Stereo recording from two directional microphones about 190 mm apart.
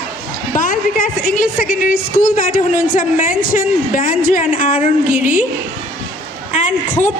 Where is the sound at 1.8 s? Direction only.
45° left (ahead or behind).